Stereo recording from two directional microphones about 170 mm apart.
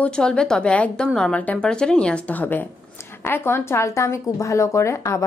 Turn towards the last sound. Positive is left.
turn(degrees=15)  # may be behind; listen again after turning